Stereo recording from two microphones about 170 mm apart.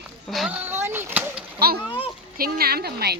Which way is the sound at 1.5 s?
65° right (ahead or behind).